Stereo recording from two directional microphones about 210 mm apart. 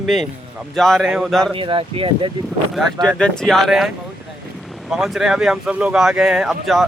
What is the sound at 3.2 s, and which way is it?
Speech, 5° left (ahead or behind).